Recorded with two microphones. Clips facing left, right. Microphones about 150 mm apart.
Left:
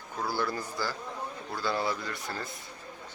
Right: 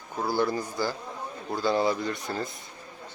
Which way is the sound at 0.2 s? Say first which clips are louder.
Right 5 dB; 15° right (ahead or behind).